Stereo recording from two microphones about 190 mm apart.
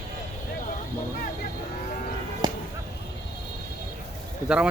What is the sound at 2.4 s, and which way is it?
Whip, 20° right (ahead or behind).